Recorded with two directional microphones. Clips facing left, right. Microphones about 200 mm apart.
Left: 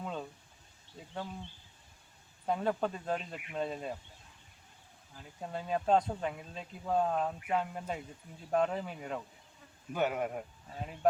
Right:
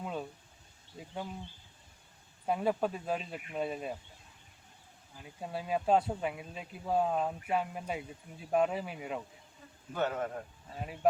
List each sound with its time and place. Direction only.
0.0 s a sound: 5° right (ahead or behind)
0.9 s speech: 10° right (ahead or behind)
2.5 s speech: 10° right (ahead or behind)
5.1 s speech: 5° right (ahead or behind)
9.9 s a man's voice: 15° left (ahead or behind)
11.0 s speech: 5° right (ahead or behind)